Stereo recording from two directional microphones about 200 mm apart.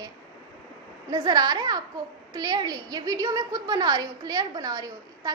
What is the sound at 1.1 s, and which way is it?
A woman's voice, 20° right (ahead or behind).